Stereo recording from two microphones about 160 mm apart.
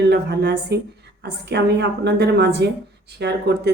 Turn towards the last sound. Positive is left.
turn(degrees=-90)